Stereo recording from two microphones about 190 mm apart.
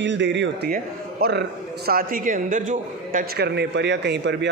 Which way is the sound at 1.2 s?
55° right (ahead or behind).